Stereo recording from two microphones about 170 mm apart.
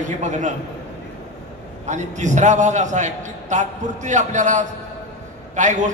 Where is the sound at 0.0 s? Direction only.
45° right (ahead or behind).